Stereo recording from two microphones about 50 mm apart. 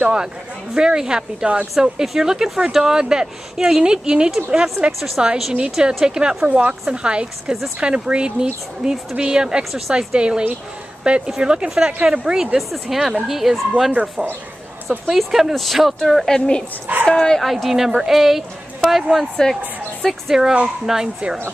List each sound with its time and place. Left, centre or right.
0.0 s speech: centre
12.5 s speech: centre
16.3 s a woman's voice: centre
17.4 s speech: centre
19.4 s a woman's voice: centre
20.1 s speech: centre